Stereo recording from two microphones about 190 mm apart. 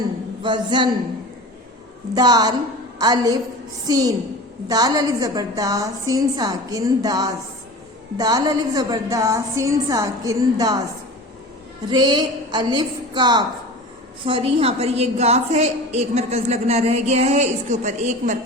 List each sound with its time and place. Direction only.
0.4 s a woman's voice: 25° right (ahead or behind)
2.1 s a woman's voice: 20° right (ahead or behind)
11.9 s a woman's voice: 20° right (ahead or behind); by 18.3 s 40° right (ahead or behind)